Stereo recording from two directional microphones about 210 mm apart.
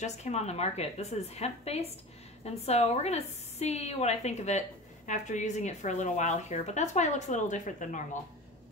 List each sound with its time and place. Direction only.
0.0 s a woman's voice: 30° left (ahead or behind)